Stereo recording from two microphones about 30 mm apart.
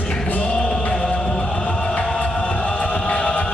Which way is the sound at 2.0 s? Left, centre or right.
Left.